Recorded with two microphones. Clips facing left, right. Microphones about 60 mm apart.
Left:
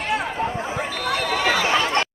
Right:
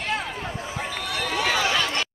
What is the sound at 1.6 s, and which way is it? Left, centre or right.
Chatter, left.